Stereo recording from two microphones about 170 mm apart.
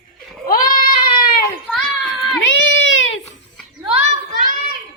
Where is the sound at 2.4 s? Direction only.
90° left.